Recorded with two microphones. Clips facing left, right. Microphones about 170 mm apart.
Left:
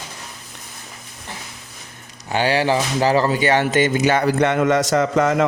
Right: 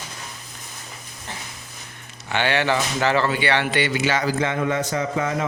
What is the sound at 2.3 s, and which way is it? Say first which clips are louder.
Speech: left 3 dB; 35° left (ahead or behind).